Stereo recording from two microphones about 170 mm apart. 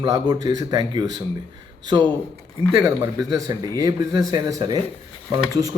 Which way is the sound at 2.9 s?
25° right (ahead or behind).